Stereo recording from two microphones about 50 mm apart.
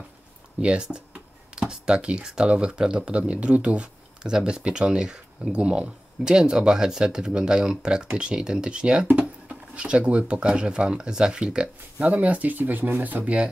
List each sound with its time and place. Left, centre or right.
0.6 s speech: right
12.1 s speech: right